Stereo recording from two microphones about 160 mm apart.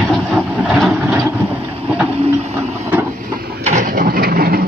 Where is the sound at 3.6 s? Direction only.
50° right (ahead or behind); by 4.6 s 70° right (ahead or behind).